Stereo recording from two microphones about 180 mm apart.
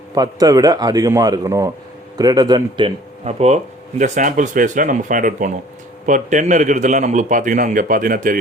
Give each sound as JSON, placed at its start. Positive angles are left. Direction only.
{"t": 0.1, "sound": "a man's voice", "side_deg": -20}